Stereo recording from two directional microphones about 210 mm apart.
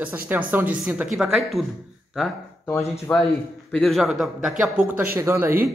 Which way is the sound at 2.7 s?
15° left (ahead or behind).